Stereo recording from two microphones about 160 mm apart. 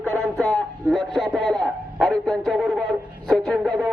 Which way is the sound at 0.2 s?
5° left (ahead or behind).